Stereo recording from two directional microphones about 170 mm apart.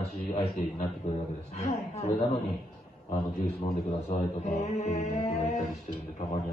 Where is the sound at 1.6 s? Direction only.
40° left (ahead or behind).